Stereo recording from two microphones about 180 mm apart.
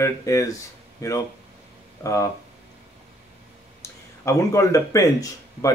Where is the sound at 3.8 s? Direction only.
15° left (ahead or behind).